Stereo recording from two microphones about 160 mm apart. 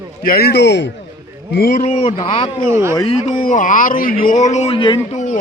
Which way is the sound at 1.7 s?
40° left (ahead or behind).